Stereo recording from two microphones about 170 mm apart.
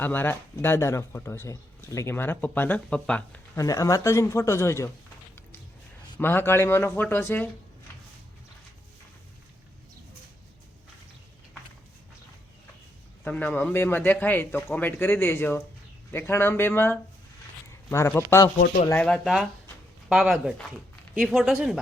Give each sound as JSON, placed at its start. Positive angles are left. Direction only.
{"t": 0.0, "sound": "speech", "side_deg": 10}
{"t": 3.6, "sound": "speech", "side_deg": 20}
{"t": 6.1, "sound": "speech", "side_deg": 10}
{"t": 13.2, "sound": "speech", "side_deg": 10}
{"t": 18.9, "sound": "speech", "side_deg": 10}